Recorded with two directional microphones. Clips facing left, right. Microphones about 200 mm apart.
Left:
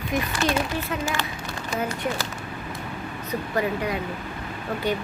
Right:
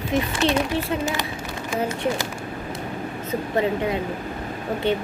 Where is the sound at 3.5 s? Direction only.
25° right (ahead or behind).